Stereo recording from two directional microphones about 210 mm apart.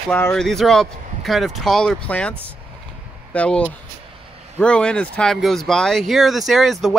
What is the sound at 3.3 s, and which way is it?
Speech, 5° left (ahead or behind).